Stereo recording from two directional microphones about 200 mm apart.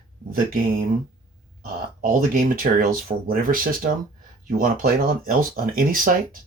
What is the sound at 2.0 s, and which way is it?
Speech, 45° right (ahead or behind).